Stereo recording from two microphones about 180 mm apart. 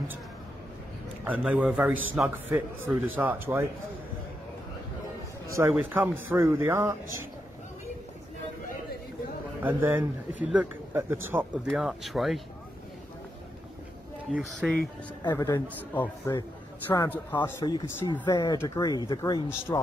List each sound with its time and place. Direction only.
1.2 s speech: 10° right (ahead or behind)
5.7 s speech: 10° right (ahead or behind)
9.6 s speech: 10° right (ahead or behind)
14.3 s speech: centre (ahead or behind)
15.3 s a man's voice: 15° left (ahead or behind)
17.9 s a man's voice: 15° left (ahead or behind)